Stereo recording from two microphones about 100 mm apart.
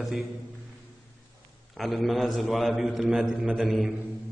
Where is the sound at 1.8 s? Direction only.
Centre (ahead or behind).